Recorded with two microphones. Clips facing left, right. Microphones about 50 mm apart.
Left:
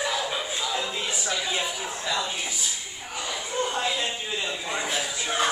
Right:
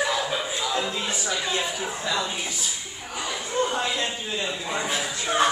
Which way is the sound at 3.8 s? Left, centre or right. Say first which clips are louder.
Right 1 dB; centre.